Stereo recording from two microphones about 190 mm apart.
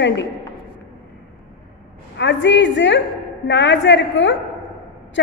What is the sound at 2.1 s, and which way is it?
A woman's voice, 70° left (ahead or behind).